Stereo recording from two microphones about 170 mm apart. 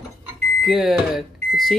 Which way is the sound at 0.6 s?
Centre (ahead or behind).